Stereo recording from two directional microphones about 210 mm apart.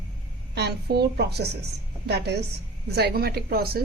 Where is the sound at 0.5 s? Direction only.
50° right (ahead or behind).